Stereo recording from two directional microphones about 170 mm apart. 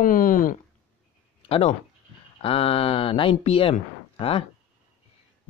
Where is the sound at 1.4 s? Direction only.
35° left (ahead or behind).